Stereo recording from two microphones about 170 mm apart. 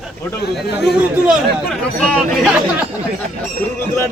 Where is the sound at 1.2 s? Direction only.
Centre (ahead or behind).